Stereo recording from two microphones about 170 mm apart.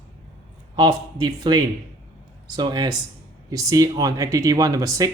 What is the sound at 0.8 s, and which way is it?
Speech, 25° right (ahead or behind).